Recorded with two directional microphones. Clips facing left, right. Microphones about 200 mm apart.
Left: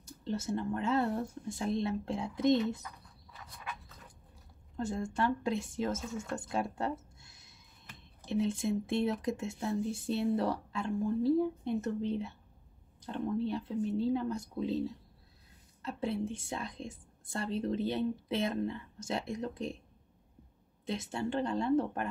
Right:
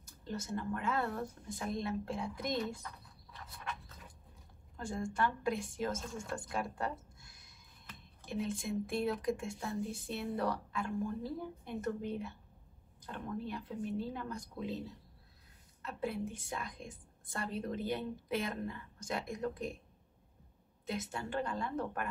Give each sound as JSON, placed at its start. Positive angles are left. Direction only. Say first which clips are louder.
{"t": 0.6, "sound": "a woman's voice", "louder": "left 4 dB", "side_deg": 25}
{"t": 4.7, "sound": "a woman's voice", "louder": "left 3 dB", "side_deg": 25}
{"t": 5.9, "sound": "speech", "louder": "left 4 dB", "side_deg": 5}
{"t": 6.3, "sound": "a woman's voice", "louder": "left 4 dB", "side_deg": 25}
{"t": 15.8, "sound": "a woman's voice", "louder": "left 4 dB", "side_deg": 30}
{"t": 20.8, "sound": "a woman's voice", "louder": "left 4 dB", "side_deg": 25}